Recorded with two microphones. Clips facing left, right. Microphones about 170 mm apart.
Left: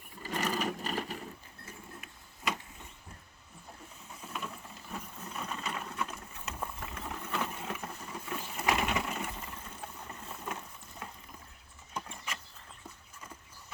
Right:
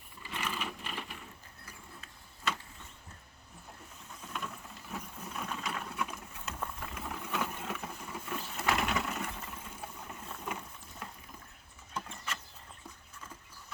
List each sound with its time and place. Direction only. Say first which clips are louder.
0.2 s sewing machine: left 6 dB; 40° left (ahead or behind)
1.6 s vehicle: left 4 dB; 15° left (ahead or behind)
4.2 s sewing machine: even; 5° left (ahead or behind)
8.2 s a sound: left 1 dB; 5° left (ahead or behind)
10.2 s boat: even; 5° left (ahead or behind)
12.0 s mechanisms: even; 10° left (ahead or behind)